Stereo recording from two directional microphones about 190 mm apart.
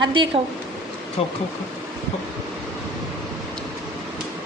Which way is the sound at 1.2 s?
30° left (ahead or behind).